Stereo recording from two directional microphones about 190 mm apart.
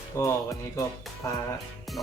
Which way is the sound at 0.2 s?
15° left (ahead or behind).